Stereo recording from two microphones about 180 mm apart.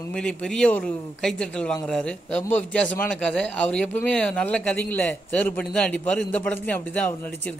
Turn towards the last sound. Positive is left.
turn(degrees=10)  # may be behind; listen again after turning